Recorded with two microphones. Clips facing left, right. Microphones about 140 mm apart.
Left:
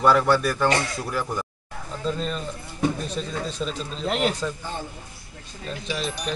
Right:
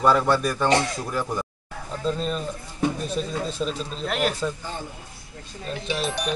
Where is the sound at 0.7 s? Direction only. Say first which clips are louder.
Right 2 dB; 20° right (ahead or behind).